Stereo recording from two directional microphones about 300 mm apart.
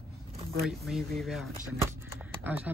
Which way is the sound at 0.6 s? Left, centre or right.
Centre.